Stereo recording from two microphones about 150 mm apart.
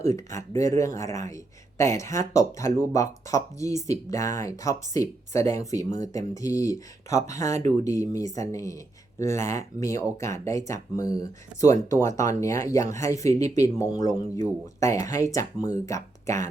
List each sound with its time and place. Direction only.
0.1 s speech: 20° left (ahead or behind)